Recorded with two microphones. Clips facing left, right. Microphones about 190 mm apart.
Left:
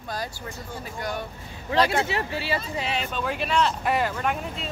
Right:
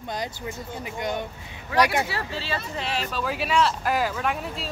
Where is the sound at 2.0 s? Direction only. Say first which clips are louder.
Left 3 dB; 15° left (ahead or behind).